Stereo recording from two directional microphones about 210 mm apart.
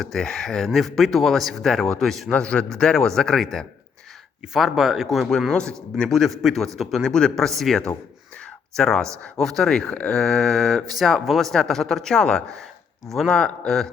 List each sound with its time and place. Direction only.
0.0 s speech: centre (ahead or behind)